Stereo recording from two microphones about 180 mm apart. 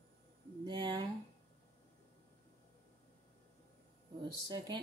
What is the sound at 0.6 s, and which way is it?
Speech, 25° right (ahead or behind).